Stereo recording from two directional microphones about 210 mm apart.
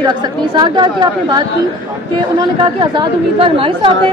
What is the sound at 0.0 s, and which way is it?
Speech, 20° right (ahead or behind).